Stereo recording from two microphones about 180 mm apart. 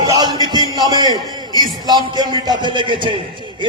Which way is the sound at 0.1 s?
20° right (ahead or behind).